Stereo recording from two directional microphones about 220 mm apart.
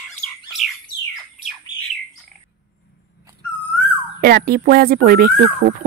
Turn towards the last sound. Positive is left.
turn(degrees=-45)  # may be behind; listen again after turning